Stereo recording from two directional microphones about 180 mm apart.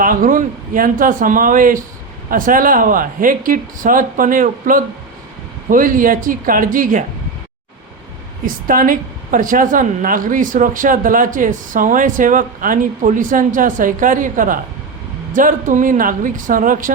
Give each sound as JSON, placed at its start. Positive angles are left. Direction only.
{"t": 0.0, "sound": "a woman's voice", "side_deg": -50}
{"t": 8.4, "sound": "a woman's voice", "side_deg": -50}